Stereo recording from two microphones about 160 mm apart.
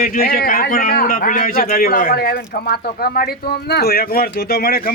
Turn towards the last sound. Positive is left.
turn(degrees=70)  # may be behind; listen again after turning